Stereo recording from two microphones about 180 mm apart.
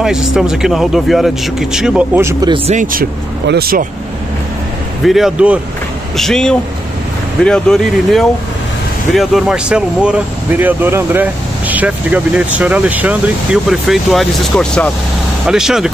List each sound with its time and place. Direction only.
0.0 s speech: 5° right (ahead or behind)
2.4 s speech: 30° right (ahead or behind)
2.7 s speech: 50° right (ahead or behind)
5.0 s speech: centre (ahead or behind)